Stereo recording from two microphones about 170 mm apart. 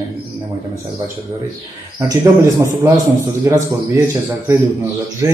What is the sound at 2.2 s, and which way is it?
Speech, 20° right (ahead or behind).